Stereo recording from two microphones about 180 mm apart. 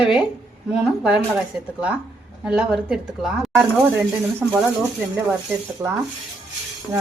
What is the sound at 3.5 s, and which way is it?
Speech, 15° right (ahead or behind).